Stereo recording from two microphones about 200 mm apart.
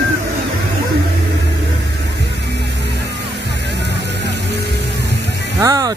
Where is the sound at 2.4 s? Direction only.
60° right (ahead or behind).